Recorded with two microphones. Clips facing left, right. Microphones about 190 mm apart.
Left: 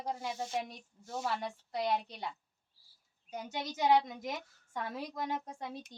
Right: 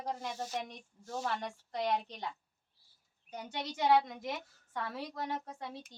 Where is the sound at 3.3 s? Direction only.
10° left (ahead or behind).